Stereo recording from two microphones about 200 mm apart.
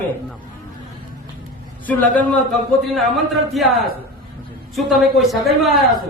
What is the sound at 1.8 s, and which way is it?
A man's voice, 5° left (ahead or behind).